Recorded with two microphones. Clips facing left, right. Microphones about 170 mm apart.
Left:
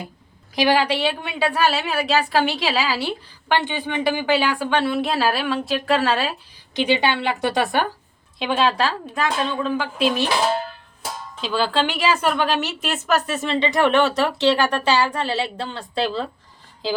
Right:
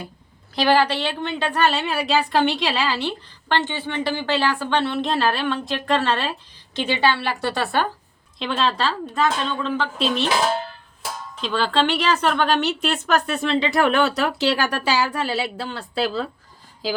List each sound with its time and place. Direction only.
0.5 s a woman's voice: 10° left (ahead or behind)
11.3 s a woman's voice: 5° left (ahead or behind)